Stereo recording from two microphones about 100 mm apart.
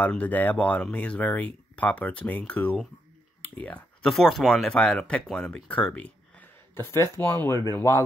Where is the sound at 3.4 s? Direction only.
15° left (ahead or behind).